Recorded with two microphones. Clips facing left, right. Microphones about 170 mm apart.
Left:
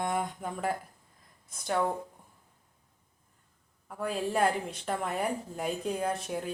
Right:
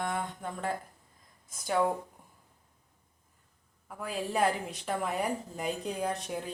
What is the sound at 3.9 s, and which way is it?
Speech, centre (ahead or behind).